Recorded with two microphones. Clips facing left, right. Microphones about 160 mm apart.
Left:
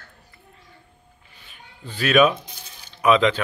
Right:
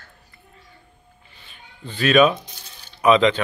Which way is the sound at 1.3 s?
10° left (ahead or behind).